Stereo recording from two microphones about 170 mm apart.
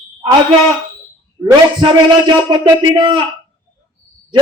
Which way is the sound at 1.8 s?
30° right (ahead or behind).